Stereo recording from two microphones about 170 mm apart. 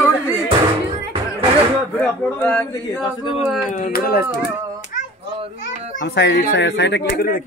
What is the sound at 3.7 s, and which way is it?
Speech, 55° left (ahead or behind).